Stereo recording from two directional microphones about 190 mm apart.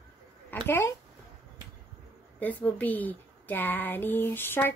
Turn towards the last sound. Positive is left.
turn(degrees=10)  # may be behind; listen again after turning